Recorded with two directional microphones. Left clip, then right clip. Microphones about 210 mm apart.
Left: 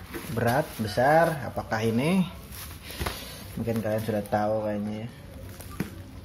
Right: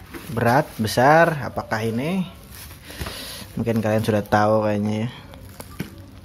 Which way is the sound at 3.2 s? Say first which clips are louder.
Right 7 dB; 35° right (ahead or behind).